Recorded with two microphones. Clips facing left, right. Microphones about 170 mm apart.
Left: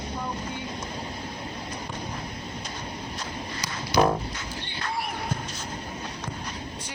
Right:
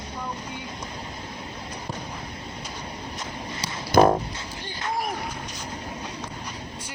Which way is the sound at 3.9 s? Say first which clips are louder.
Right 5 dB; 50° right (ahead or behind).